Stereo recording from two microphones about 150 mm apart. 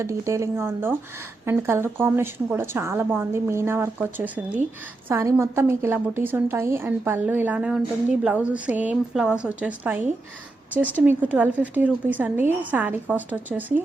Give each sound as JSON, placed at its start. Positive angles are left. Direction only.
{"t": 0.0, "sound": "a woman's voice", "side_deg": -20}
{"t": 11.0, "sound": "a woman's voice", "side_deg": -10}